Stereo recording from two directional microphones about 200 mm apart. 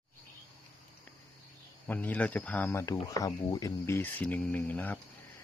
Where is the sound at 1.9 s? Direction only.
10° left (ahead or behind).